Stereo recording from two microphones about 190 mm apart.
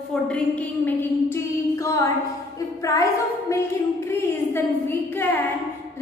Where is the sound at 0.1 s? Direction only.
5° left (ahead or behind).